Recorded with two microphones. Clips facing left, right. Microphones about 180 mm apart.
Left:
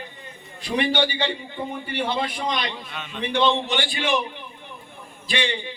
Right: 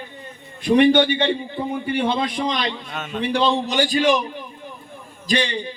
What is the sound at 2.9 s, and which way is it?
A man's voice, 45° right (ahead or behind).